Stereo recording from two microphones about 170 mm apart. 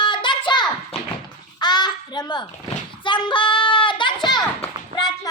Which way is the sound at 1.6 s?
25° left (ahead or behind).